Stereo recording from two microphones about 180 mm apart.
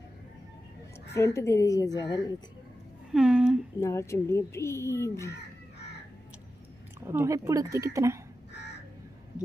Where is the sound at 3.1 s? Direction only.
5° right (ahead or behind).